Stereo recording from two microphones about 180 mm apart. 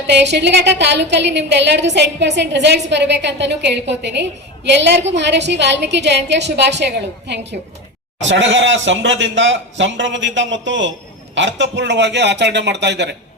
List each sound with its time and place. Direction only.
0.1 s a woman's voice: 70° right (ahead or behind)
8.2 s a woman's voice: 90° right; by 13.1 s 70° right (ahead or behind)